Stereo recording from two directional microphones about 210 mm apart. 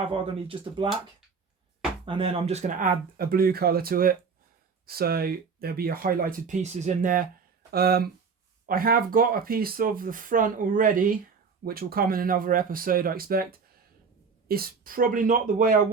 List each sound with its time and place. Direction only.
0.1 s speech: 25° right (ahead or behind)
2.0 s speech: 25° right (ahead or behind); by 15.8 s 40° right (ahead or behind)